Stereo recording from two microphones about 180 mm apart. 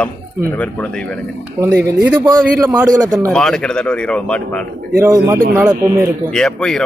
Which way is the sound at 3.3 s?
5° left (ahead or behind).